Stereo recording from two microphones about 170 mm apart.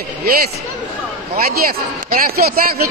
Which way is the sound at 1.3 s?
60° right (ahead or behind).